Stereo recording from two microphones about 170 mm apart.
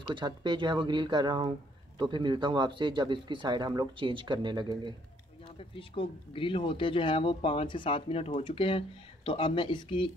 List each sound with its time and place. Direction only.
0.1 s speech: 25° right (ahead or behind)
5.6 s speech: 30° left (ahead or behind)